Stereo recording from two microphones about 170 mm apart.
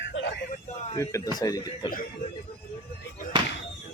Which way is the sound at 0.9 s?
20° left (ahead or behind).